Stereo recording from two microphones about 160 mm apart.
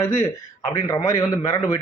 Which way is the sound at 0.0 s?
20° left (ahead or behind).